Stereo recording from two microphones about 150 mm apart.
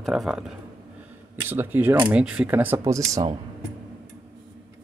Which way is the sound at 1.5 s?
15° right (ahead or behind).